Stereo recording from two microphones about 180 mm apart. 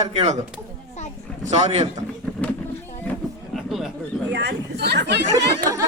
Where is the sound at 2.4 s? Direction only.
10° left (ahead or behind).